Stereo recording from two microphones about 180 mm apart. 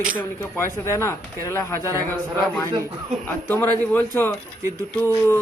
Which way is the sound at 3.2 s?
10° left (ahead or behind).